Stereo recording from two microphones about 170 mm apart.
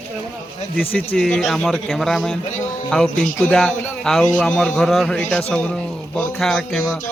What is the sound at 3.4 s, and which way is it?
A man's voice, 5° left (ahead or behind).